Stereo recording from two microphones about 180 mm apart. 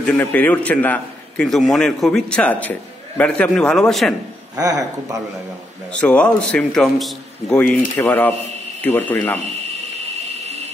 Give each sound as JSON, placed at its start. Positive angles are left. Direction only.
{"t": 0.0, "sound": "a man's voice", "side_deg": 5}
{"t": 4.6, "sound": "speech", "side_deg": -20}
{"t": 5.9, "sound": "a man's voice", "side_deg": 5}